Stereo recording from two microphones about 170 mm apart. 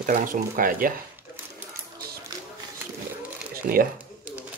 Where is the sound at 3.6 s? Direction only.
60° right (ahead or behind).